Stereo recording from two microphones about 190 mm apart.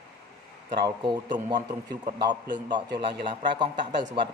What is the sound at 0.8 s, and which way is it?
Speech, 25° right (ahead or behind).